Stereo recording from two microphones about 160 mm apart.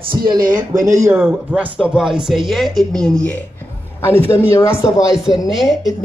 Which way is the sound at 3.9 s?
15° left (ahead or behind).